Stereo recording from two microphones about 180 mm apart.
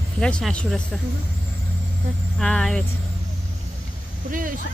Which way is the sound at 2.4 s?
5° left (ahead or behind).